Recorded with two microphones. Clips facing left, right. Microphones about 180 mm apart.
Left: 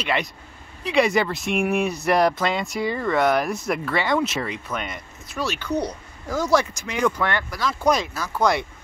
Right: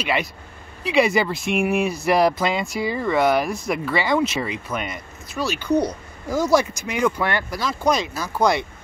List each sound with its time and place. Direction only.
0.0 s speech: 5° right (ahead or behind)